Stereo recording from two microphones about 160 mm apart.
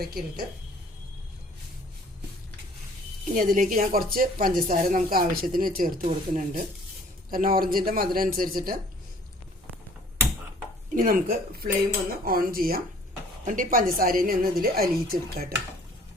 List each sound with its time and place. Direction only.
0.0 s a woman's voice: 70° right (ahead or behind)
3.3 s a woman's voice: 55° right (ahead or behind)
10.9 s a woman's voice: 60° right (ahead or behind)
13.4 s a woman's voice: 55° right (ahead or behind)